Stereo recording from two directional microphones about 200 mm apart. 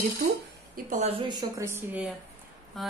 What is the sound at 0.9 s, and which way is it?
Speech, 30° right (ahead or behind).